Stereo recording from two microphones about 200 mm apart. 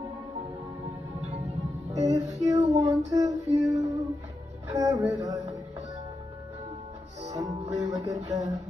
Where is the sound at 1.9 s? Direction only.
15° right (ahead or behind).